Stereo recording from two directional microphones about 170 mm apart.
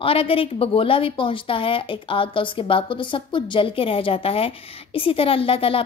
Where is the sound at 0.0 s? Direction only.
35° left (ahead or behind).